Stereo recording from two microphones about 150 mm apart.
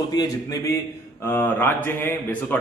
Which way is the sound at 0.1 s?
25° left (ahead or behind).